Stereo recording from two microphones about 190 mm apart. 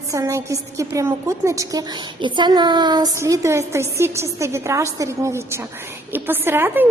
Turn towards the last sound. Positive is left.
turn(degrees=-10)  # may be behind; listen again after turning